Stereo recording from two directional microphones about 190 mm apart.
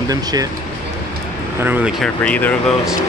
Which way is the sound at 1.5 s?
10° right (ahead or behind).